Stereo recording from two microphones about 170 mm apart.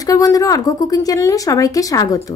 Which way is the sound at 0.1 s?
20° left (ahead or behind).